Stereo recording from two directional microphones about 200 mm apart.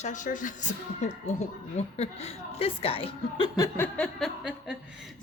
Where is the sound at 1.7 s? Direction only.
30° left (ahead or behind).